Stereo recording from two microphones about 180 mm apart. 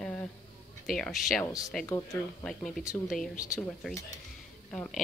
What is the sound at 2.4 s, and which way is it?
Speech, centre (ahead or behind).